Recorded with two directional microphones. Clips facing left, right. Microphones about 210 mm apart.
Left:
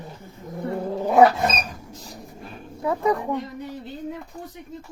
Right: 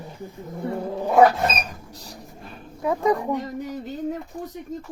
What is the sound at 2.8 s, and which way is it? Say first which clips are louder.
Speech: right 1 dB; 15° right (ahead or behind).